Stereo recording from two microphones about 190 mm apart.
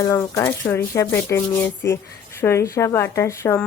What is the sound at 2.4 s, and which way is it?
A woman's voice, 15° left (ahead or behind).